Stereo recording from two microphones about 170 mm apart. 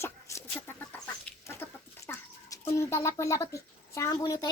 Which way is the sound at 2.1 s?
15° left (ahead or behind).